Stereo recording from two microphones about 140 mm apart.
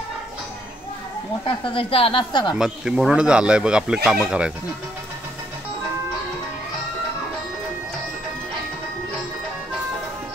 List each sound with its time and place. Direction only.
1.4 s a woman's voice: 40° left (ahead or behind)
2.5 s speech: 5° right (ahead or behind)